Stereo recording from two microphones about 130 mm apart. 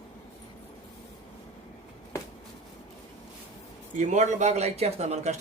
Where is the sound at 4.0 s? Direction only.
65° right (ahead or behind).